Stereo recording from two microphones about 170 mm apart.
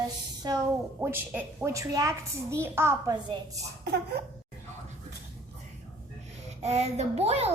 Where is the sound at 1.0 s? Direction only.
10° right (ahead or behind).